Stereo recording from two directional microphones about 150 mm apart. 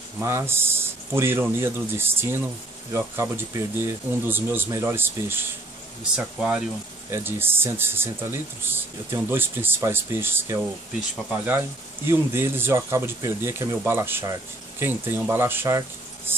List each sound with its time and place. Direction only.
0.2 s speech: 20° right (ahead or behind)
12.1 s speech: 15° right (ahead or behind)